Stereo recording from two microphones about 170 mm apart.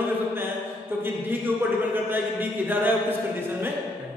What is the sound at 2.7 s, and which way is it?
Speech, 10° right (ahead or behind).